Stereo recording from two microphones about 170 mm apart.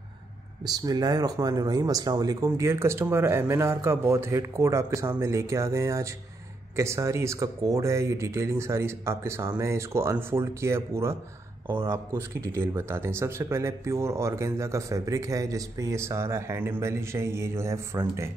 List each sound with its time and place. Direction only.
0.7 s speech: 25° right (ahead or behind)